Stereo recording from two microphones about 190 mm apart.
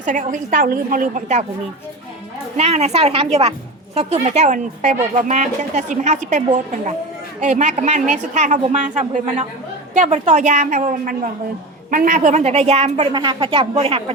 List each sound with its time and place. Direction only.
0.0 s a woman's voice: 40° right (ahead or behind)
2.6 s speech: 35° right (ahead or behind)
7.4 s speech: 40° right (ahead or behind)
13.1 s speech: 25° right (ahead or behind)